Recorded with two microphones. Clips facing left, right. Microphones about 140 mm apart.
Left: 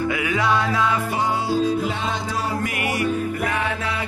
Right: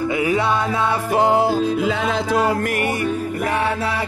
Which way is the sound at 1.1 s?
55° right (ahead or behind).